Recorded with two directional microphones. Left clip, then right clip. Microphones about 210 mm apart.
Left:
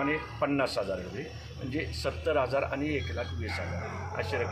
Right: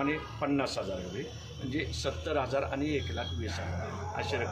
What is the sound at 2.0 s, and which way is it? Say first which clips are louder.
A man's voice: left 5 dB; 10° right (ahead or behind).